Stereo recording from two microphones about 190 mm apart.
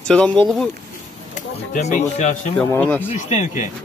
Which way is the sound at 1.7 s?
35° left (ahead or behind).